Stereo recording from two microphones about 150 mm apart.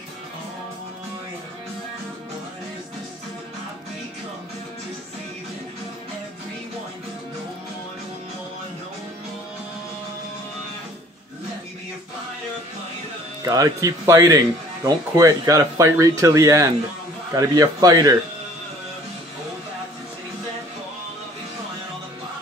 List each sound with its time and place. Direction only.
13.4 s speech: 25° right (ahead or behind)